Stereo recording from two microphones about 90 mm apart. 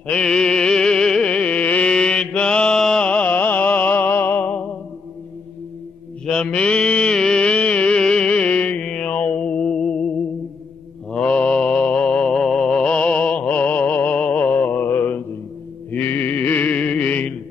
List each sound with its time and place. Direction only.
0.0 s music: 10° left (ahead or behind)
6.2 s mantra: 10° left (ahead or behind)
15.9 s music: 20° left (ahead or behind)